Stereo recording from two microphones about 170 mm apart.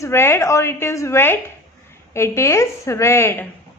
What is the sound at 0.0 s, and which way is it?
A woman's voice, 15° left (ahead or behind).